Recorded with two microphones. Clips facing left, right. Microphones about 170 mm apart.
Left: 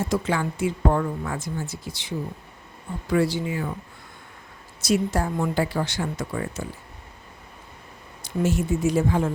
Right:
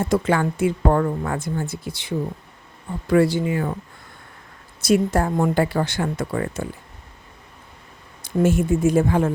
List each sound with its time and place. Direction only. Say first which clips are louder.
0.0 s a woman's voice: right 5 dB; 55° right (ahead or behind)
4.8 s a woman's voice: right 4 dB; 55° right (ahead or behind)
8.2 s speech: right 5 dB; 50° right (ahead or behind)